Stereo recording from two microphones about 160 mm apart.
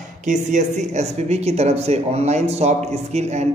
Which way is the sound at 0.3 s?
50° right (ahead or behind).